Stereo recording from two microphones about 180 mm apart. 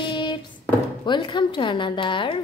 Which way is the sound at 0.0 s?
25° left (ahead or behind).